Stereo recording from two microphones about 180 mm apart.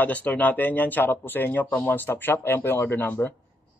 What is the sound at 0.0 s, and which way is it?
Speech, 10° left (ahead or behind).